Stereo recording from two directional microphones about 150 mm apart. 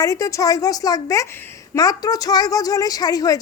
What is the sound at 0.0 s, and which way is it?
Speech, 20° left (ahead or behind).